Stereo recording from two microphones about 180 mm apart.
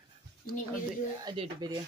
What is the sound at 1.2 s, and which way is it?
Speech, 25° right (ahead or behind).